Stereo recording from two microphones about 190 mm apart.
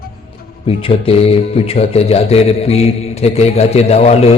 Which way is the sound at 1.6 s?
30° left (ahead or behind).